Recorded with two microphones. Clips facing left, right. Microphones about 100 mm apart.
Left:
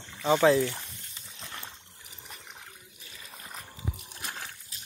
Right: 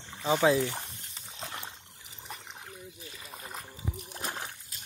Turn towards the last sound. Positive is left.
turn(degrees=-40)  # may be behind; listen again after turning